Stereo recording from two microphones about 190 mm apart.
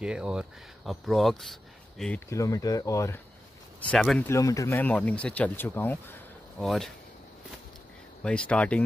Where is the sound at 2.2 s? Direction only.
15° left (ahead or behind).